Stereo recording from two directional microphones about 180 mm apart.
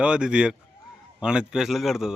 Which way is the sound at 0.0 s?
5° right (ahead or behind).